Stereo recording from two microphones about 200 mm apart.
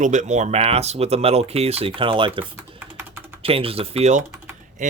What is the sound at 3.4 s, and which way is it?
Speech, 30° right (ahead or behind).